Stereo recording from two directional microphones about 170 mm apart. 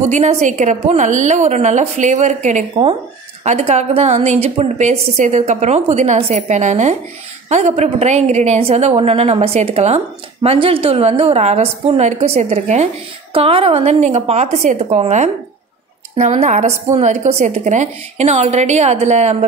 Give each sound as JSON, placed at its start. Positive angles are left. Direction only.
{"t": 0.1, "sound": "a woman's voice", "side_deg": -40}